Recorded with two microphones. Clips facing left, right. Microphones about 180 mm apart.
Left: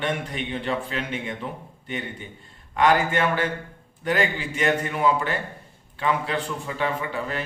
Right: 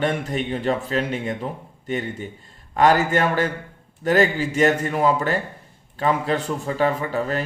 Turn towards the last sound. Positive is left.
turn(degrees=-40)  # may be behind; listen again after turning